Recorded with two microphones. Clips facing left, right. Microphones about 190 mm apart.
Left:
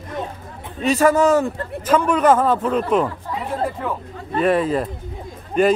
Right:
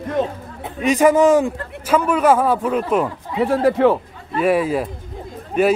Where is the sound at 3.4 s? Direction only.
85° right.